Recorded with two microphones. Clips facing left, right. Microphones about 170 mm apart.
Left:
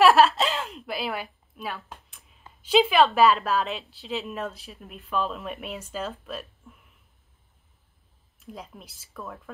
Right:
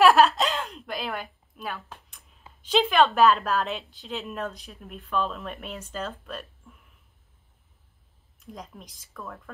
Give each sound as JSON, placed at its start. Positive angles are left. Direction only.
{"t": 0.0, "sound": "a sound", "side_deg": 0}
{"t": 2.6, "sound": "a woman's voice", "side_deg": 10}
{"t": 8.5, "sound": "a woman's voice", "side_deg": 5}